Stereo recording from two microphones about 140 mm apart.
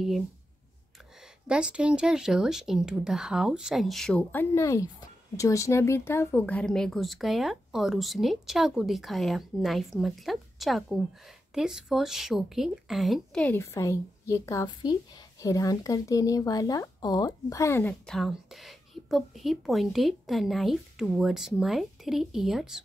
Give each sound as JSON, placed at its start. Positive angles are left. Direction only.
{"t": 1.5, "sound": "speech", "side_deg": -5}
{"t": 13.6, "sound": "speech", "side_deg": 20}
{"t": 18.0, "sound": "speech", "side_deg": 0}